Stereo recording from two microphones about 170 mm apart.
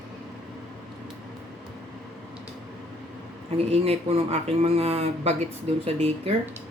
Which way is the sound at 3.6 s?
35° right (ahead or behind).